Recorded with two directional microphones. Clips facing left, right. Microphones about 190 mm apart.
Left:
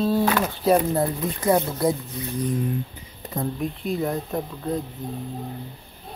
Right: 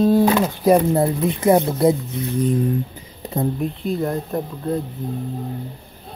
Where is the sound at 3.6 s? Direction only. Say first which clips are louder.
Right 3 dB; centre (ahead or behind).